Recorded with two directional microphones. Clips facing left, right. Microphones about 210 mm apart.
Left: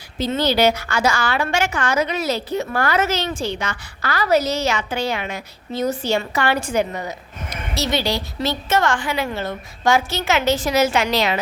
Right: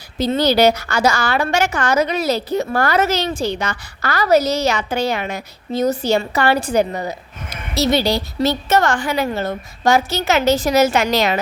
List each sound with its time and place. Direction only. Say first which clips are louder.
0.2 s a woman's voice: right 3 dB; 40° right (ahead or behind)